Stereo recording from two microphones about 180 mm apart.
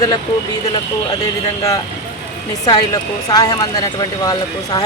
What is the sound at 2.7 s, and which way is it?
Speech, 20° left (ahead or behind).